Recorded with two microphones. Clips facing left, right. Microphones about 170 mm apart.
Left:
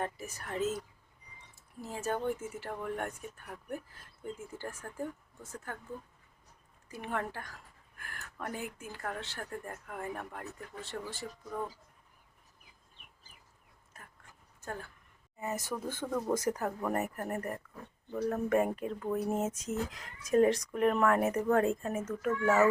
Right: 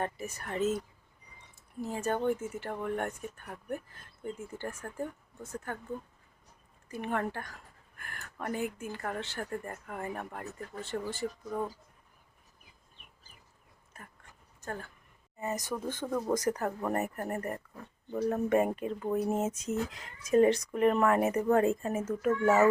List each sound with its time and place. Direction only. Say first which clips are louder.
0.0 s speech: right 2 dB; centre (ahead or behind)
6.8 s speech: right 4 dB; centre (ahead or behind)
14.6 s speech: right 2 dB; 5° left (ahead or behind)
15.5 s speech: even; 15° right (ahead or behind)
16.0 s speech: right 1 dB; centre (ahead or behind)
18.1 s speech: right 2 dB; 10° right (ahead or behind)
22.3 s speech: right 2 dB; 20° right (ahead or behind)